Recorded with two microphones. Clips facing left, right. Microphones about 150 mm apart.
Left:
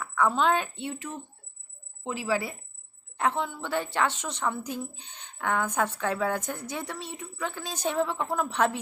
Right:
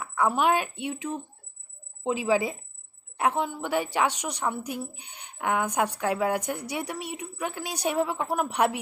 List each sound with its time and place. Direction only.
0.0 s a woman's voice: 10° right (ahead or behind)